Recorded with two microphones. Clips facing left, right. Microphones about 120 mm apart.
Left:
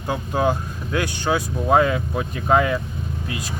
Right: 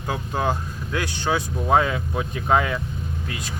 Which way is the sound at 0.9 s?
15° left (ahead or behind).